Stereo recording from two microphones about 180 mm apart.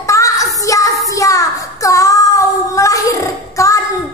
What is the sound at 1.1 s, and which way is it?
Child singing, 20° left (ahead or behind).